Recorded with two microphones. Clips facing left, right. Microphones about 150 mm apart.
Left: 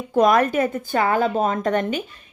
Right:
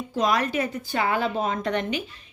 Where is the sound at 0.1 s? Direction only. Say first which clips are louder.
Left 7 dB; 55° left (ahead or behind).